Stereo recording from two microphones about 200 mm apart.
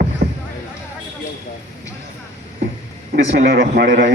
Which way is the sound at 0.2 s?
50° right (ahead or behind).